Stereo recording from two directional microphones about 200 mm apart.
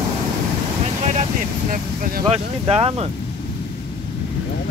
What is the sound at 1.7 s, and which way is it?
Speech, 45° right (ahead or behind).